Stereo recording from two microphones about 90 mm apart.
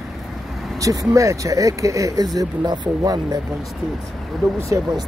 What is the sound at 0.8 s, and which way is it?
Speech, 40° right (ahead or behind).